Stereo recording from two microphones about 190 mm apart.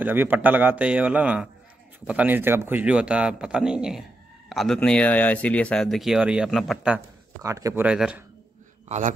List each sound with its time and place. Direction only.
0.0 s a man's voice: 10° right (ahead or behind)
7.4 s a man's voice: 15° right (ahead or behind)
8.8 s a man's voice: 35° right (ahead or behind)